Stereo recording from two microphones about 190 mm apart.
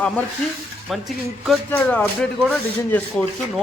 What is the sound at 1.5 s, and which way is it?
Speech, 10° left (ahead or behind).